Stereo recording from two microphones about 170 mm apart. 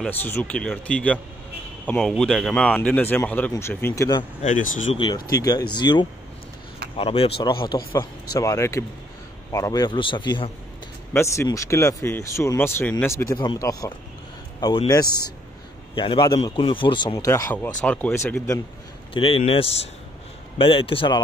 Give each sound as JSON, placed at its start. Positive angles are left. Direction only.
{"t": 0.0, "sound": "speech", "side_deg": 10}
{"t": 4.4, "sound": "speech", "side_deg": 50}
{"t": 4.9, "sound": "a man's voice", "side_deg": 30}
{"t": 19.1, "sound": "speech", "side_deg": 35}